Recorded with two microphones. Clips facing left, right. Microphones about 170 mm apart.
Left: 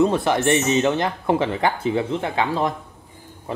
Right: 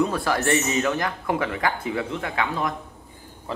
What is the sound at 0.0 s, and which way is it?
Speech, 25° left (ahead or behind).